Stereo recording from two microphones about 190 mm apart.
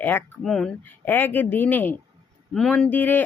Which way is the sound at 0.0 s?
10° left (ahead or behind).